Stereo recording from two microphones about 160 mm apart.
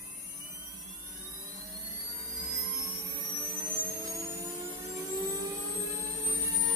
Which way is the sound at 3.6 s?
25° right (ahead or behind).